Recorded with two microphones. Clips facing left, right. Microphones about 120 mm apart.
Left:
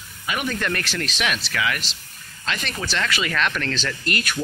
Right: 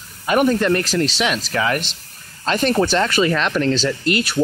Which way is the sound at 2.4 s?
40° right (ahead or behind).